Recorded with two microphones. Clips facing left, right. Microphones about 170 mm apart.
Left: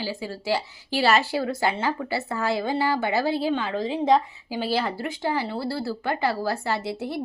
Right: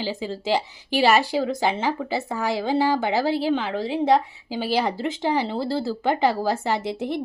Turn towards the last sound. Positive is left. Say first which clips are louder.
# right 3 dB
turn(degrees=-20)  # may be behind; listen again after turning